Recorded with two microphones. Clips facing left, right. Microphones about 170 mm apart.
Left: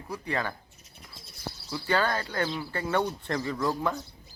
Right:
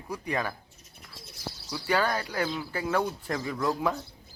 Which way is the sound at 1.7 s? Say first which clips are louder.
Even; 10° right (ahead or behind).